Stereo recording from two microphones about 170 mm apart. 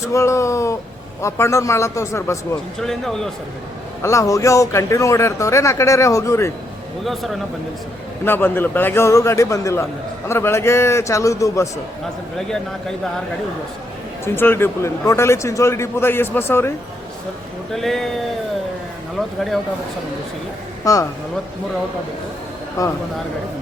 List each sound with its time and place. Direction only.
0.1 s speech: 15° left (ahead or behind)
2.8 s a man's voice: centre (ahead or behind)
4.0 s speech: 20° left (ahead or behind)
7.0 s a man's voice: centre (ahead or behind)
8.2 s speech: 10° left (ahead or behind)
14.3 s speech: 15° left (ahead or behind)
17.7 s a man's voice: centre (ahead or behind)
20.8 s speech: 20° left (ahead or behind)
22.8 s speech: 20° left (ahead or behind)